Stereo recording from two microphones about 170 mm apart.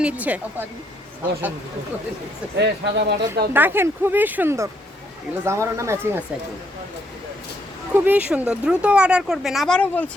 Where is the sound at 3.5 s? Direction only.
10° right (ahead or behind).